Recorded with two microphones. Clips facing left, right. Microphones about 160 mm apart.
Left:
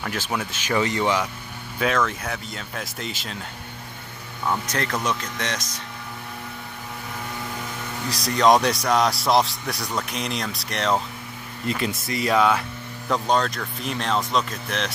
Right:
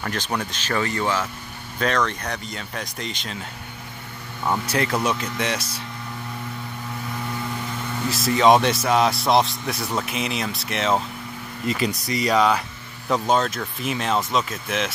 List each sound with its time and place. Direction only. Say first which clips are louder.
0.0 s speech: right 1 dB; 5° left (ahead or behind)
1.8 s speech: even; 5° left (ahead or behind)
4.7 s speech: right 3 dB; 10° right (ahead or behind)
8.2 s speech: right 1 dB; 5° right (ahead or behind)